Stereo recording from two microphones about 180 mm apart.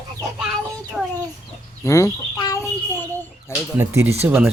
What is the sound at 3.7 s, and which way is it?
Speech, 15° right (ahead or behind).